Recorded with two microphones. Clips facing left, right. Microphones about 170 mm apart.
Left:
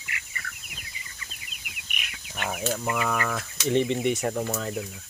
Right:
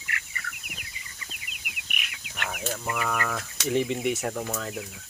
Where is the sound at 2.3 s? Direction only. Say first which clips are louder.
Left 3 dB; 20° left (ahead or behind).